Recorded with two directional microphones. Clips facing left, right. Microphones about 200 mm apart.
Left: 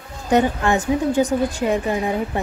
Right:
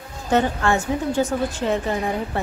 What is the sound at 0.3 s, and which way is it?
A woman's voice, 15° left (ahead or behind).